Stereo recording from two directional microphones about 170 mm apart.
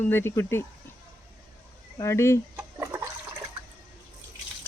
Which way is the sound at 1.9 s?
15° left (ahead or behind).